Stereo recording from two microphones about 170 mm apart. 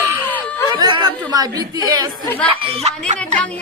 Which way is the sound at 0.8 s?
25° right (ahead or behind).